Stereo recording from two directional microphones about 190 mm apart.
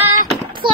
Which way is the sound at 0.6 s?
25° right (ahead or behind).